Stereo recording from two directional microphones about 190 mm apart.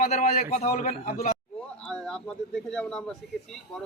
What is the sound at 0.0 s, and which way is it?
A man's voice, 35° left (ahead or behind).